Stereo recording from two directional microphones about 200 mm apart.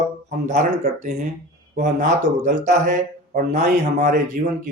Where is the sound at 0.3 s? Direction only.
35° right (ahead or behind).